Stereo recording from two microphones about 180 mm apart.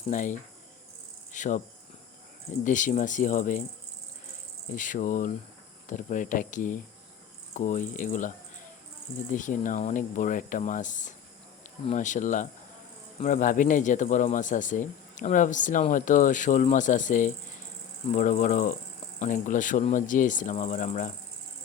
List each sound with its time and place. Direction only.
0.1 s speech: 45° left (ahead or behind)
1.3 s cricket: 45° left (ahead or behind)
2.5 s speech: 45° left (ahead or behind)
4.7 s speech: 45° left (ahead or behind)
9.3 s speech: 45° left (ahead or behind)